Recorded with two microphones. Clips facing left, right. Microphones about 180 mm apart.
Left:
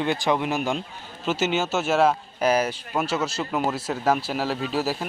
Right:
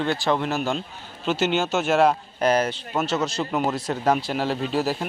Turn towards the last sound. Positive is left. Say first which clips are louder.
# right 2 dB
turn(degrees=5)  # may be behind; listen again after turning